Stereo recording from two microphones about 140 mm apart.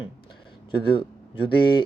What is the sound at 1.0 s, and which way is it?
Speech, 35° left (ahead or behind).